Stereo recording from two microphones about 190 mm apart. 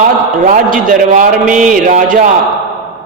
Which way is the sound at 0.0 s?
45° right (ahead or behind).